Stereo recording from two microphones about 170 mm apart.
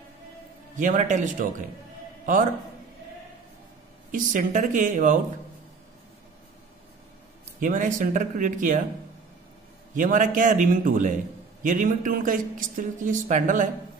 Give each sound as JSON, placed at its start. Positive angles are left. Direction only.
{"t": 0.7, "sound": "a man's voice", "side_deg": -45}
{"t": 4.1, "sound": "a man's voice", "side_deg": -50}
{"t": 7.6, "sound": "a man's voice", "side_deg": -50}
{"t": 9.9, "sound": "a man's voice", "side_deg": -50}